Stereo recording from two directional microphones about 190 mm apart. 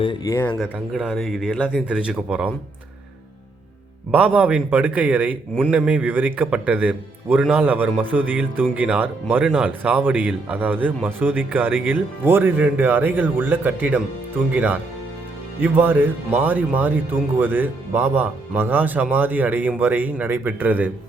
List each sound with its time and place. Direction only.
0.0 s speech: 25° left (ahead or behind)
0.6 s speech: 5° right (ahead or behind)
4.1 s speech: 5° right (ahead or behind)